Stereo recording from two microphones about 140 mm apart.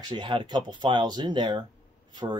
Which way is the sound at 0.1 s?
35° right (ahead or behind).